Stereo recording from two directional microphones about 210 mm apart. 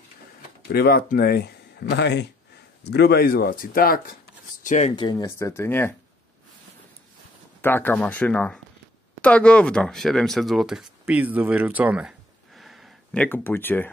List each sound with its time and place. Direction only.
0.7 s speech: 45° left (ahead or behind)
4.9 s speech: 20° left (ahead or behind)
7.6 s speech: 10° left (ahead or behind)